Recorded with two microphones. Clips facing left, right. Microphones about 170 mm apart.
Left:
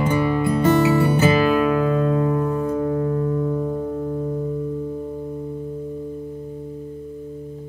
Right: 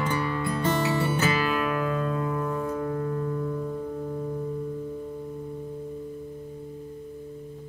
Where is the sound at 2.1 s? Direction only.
45° left (ahead or behind).